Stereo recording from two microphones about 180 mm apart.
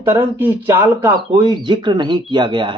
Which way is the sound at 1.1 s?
25° right (ahead or behind).